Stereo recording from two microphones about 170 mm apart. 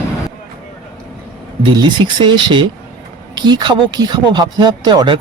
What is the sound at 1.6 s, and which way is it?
Speech, 30° right (ahead or behind).